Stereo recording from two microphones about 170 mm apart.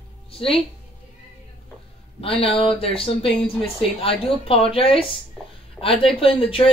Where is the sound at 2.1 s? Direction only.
35° left (ahead or behind).